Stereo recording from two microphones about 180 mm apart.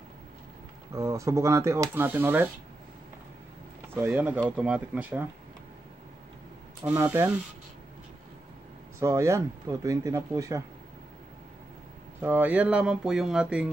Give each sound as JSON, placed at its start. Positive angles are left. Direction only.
{"t": 0.9, "sound": "speech", "side_deg": -15}
{"t": 3.9, "sound": "speech", "side_deg": -10}
{"t": 6.9, "sound": "speech", "side_deg": -10}
{"t": 9.0, "sound": "speech", "side_deg": -15}
{"t": 12.2, "sound": "speech", "side_deg": -10}